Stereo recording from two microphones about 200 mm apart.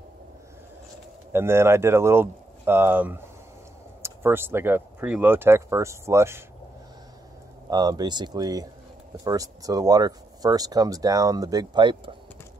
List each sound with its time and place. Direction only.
1.3 s speech: 10° right (ahead or behind)
7.7 s speech: 20° right (ahead or behind)